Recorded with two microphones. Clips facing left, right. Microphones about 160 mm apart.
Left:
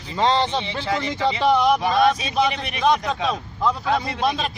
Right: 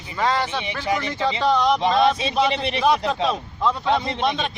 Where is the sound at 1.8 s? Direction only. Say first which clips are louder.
Even; 25° right (ahead or behind).